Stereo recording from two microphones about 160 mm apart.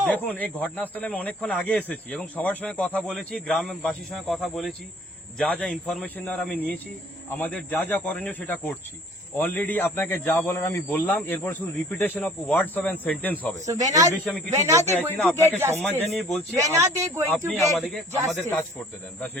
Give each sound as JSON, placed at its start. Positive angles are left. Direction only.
{"t": 0.1, "sound": "speech", "side_deg": 10}
{"t": 13.7, "sound": "speech", "side_deg": -20}
{"t": 15.1, "sound": "speech", "side_deg": 10}
{"t": 15.4, "sound": "speech", "side_deg": -15}
{"t": 15.8, "sound": "speech", "side_deg": 5}
{"t": 16.6, "sound": "speech", "side_deg": -20}
{"t": 17.3, "sound": "speech", "side_deg": 0}